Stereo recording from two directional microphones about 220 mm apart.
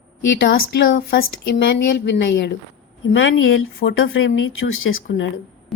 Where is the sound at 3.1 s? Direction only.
65° left (ahead or behind).